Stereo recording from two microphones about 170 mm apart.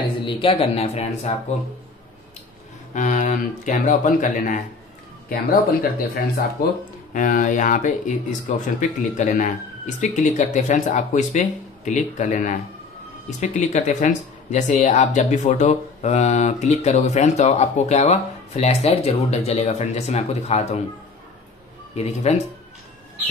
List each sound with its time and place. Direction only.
0.2 s speech: 30° left (ahead or behind)
2.9 s speech: 45° left (ahead or behind)
9.1 s speech: 45° left (ahead or behind)
21.9 s speech: 40° left (ahead or behind)